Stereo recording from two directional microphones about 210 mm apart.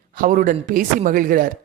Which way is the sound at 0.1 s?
40° right (ahead or behind).